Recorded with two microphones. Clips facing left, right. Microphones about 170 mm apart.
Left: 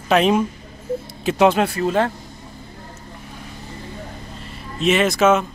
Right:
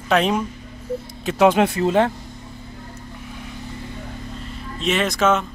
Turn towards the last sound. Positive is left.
turn(degrees=5)  # may be behind; listen again after turning